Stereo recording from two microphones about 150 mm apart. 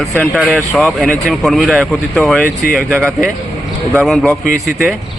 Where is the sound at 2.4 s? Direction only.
75° left (ahead or behind).